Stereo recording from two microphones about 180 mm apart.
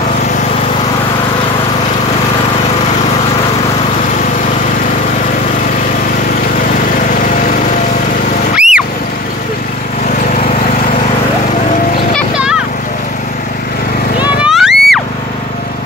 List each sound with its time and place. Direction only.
8.5 s vehicle: 5° right (ahead or behind)
14.4 s music: centre (ahead or behind)